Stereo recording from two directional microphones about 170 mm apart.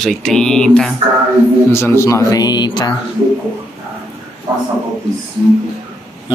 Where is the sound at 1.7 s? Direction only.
15° left (ahead or behind).